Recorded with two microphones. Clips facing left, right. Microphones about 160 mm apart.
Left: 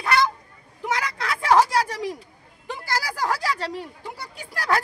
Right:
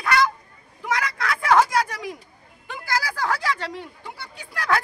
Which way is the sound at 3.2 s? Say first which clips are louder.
Left 2 dB; 35° left (ahead or behind).